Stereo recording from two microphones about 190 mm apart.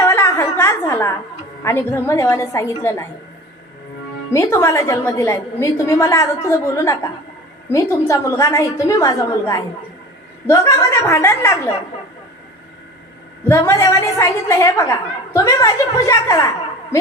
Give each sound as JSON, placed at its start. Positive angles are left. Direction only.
{"t": 0.0, "sound": "a sound", "side_deg": 15}
{"t": 1.6, "sound": "a woman's voice", "side_deg": 10}
{"t": 4.3, "sound": "a woman's voice", "side_deg": 15}
{"t": 13.5, "sound": "a woman's voice", "side_deg": 15}